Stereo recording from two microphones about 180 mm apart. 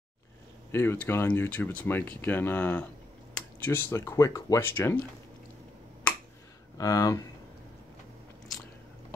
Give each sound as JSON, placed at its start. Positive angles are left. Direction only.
{"t": 0.7, "sound": "speech", "side_deg": 15}
{"t": 6.8, "sound": "speech", "side_deg": 20}